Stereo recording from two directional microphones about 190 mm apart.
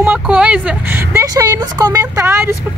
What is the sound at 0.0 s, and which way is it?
Speech, 5° right (ahead or behind).